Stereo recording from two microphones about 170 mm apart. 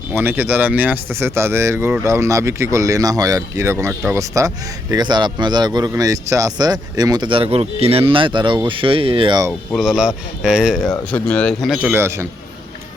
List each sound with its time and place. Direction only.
0.1 s a man's voice: 10° right (ahead or behind)
9.5 s speech: centre (ahead or behind)
11.1 s speech: 5° left (ahead or behind)
11.9 s speech: 15° right (ahead or behind)